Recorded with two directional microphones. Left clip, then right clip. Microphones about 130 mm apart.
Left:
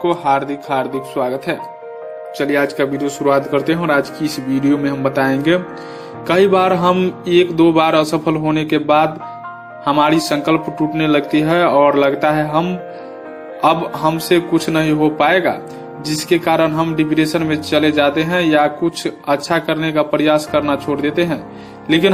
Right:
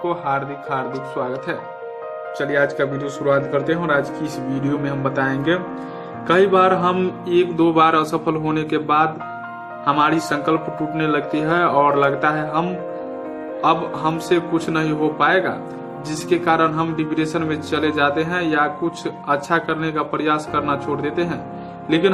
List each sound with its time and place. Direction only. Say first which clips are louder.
0.0 s speech: left 6 dB; 35° left (ahead or behind)